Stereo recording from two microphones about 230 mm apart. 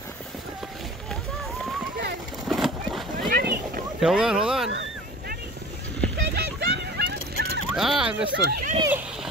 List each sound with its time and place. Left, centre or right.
2.4 s a sound: centre
3.3 s boat: right
4.0 s speech: centre
5.9 s a sound: right
7.7 s vehicle: centre
8.7 s speech: centre